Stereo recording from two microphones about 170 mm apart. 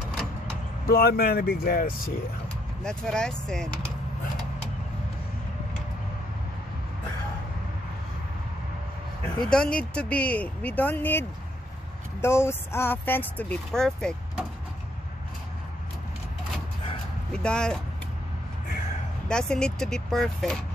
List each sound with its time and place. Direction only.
0.8 s speech: 65° left (ahead or behind)
2.8 s speech: 5° left (ahead or behind)
9.4 s speech: 5° left (ahead or behind)
17.3 s speech: 5° left (ahead or behind)
19.2 s speech: 5° left (ahead or behind)